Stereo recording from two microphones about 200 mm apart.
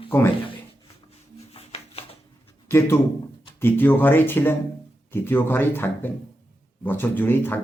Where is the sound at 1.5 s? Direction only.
30° left (ahead or behind).